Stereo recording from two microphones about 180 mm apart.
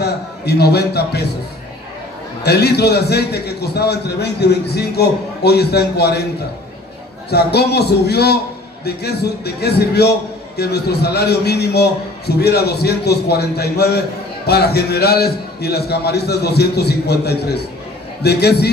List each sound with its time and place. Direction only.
0.0 s a man's voice: 65° left (ahead or behind)
2.4 s a man's voice: 65° left (ahead or behind)
7.2 s a man's voice: 65° left (ahead or behind)